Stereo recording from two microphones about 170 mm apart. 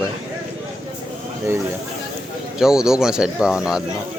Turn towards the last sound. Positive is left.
turn(degrees=-5)  # may be behind; listen again after turning